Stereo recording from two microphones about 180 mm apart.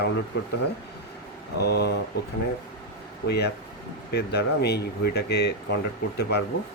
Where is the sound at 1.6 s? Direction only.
65° left (ahead or behind).